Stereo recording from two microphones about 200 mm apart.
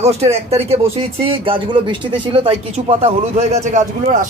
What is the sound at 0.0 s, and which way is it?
Speech, 30° right (ahead or behind).